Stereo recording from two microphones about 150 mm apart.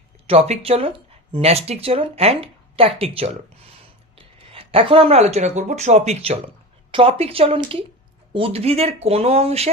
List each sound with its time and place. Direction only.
0.3 s speech: 40° right (ahead or behind)
4.4 s speech: 40° right (ahead or behind)